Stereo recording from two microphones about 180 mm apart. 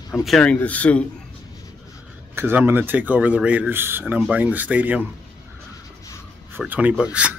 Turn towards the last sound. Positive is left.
turn(degrees=-10)  # may be behind; listen again after turning